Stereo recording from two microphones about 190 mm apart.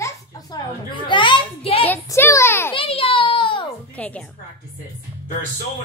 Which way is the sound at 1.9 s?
10° left (ahead or behind).